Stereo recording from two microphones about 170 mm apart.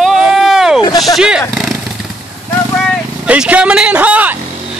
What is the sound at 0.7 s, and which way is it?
Speech, 25° left (ahead or behind).